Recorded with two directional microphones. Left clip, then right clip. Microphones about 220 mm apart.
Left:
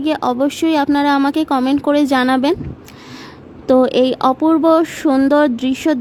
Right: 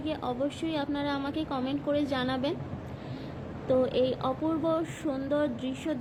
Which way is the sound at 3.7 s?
50° left (ahead or behind).